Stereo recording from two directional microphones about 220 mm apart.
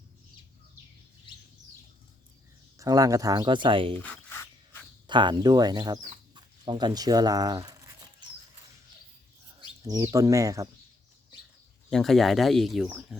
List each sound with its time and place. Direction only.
2.7 s speech: 15° right (ahead or behind)
4.0 s a sound: 10° left (ahead or behind)
5.0 s speech: 20° right (ahead or behind)
9.8 s speech: 15° right (ahead or behind)
11.9 s speech: centre (ahead or behind)